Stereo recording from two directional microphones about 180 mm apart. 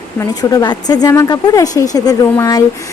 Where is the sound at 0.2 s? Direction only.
20° left (ahead or behind).